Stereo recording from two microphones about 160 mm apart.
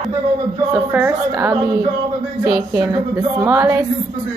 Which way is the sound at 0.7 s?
10° right (ahead or behind).